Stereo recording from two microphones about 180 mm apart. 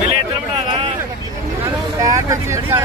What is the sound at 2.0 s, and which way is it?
Speech, 15° right (ahead or behind).